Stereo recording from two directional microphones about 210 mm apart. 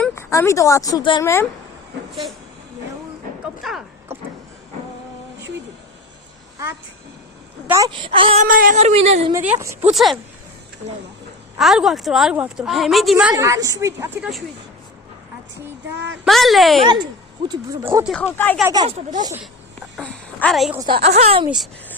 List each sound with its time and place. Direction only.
0.0 s speech: 15° left (ahead or behind)
3.6 s a sound: centre (ahead or behind)
7.7 s speech: 20° right (ahead or behind)
8.4 s speech: 40° right (ahead or behind)
9.3 s a woman's voice: 10° right (ahead or behind)
11.5 s a woman's voice: centre (ahead or behind)
13.3 s a woman's voice: 15° right (ahead or behind)
14.2 s a woman's voice: centre (ahead or behind)
16.2 s a woman's voice: centre (ahead or behind)
17.5 s a woman's voice: 15° right (ahead or behind)
18.0 s a woman's voice: 5° left (ahead or behind)
18.6 s speech: 20° right (ahead or behind)
20.0 s a woman's voice: 5° left (ahead or behind)
21.0 s speech: 30° right (ahead or behind)